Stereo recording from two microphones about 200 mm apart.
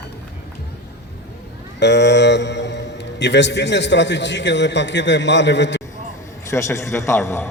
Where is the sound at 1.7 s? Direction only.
60° left (ahead or behind).